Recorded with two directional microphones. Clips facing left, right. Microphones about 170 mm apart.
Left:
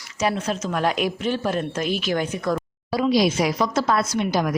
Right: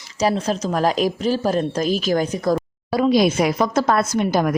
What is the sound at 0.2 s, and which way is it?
Speech, 35° right (ahead or behind).